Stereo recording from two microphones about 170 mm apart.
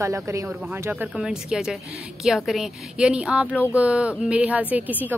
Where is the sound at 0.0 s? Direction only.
20° right (ahead or behind).